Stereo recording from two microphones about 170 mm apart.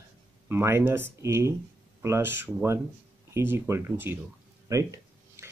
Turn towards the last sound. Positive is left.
turn(degrees=-20)  # may be behind; listen again after turning